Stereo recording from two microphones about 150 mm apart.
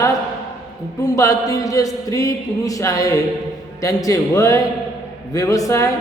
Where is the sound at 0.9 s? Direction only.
20° left (ahead or behind).